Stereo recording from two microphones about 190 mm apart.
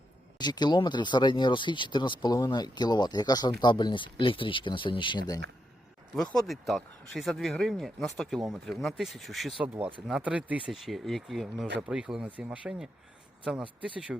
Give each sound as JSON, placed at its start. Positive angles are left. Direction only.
{"t": 0.3, "sound": "speech", "side_deg": 20}
{"t": 6.3, "sound": "speech", "side_deg": 0}